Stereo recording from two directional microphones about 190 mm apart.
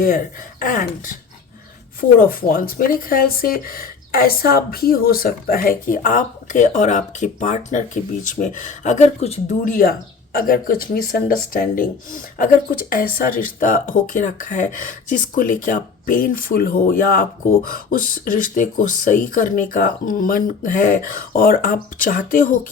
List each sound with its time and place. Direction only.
0.6 s speech: 45° left (ahead or behind)